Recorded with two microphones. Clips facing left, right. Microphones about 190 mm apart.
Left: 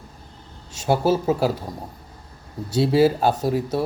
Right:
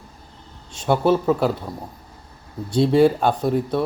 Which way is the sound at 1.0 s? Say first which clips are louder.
Right 3 dB; 5° left (ahead or behind).